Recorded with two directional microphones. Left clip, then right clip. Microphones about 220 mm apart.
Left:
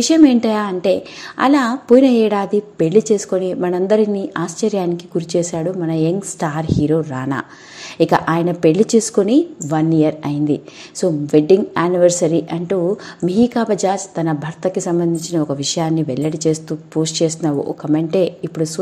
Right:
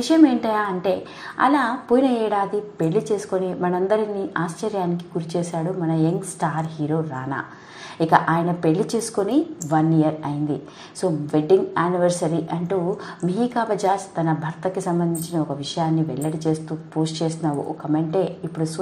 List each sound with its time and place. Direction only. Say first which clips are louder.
0.0 s a woman's voice: left 5 dB; 55° left (ahead or behind)